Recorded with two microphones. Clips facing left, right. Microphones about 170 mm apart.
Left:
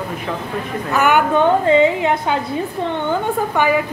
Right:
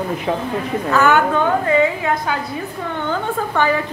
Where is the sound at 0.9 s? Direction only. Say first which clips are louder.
Even; 15° left (ahead or behind).